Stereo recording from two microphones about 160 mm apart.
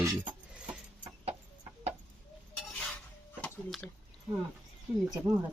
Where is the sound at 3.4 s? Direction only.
Centre (ahead or behind).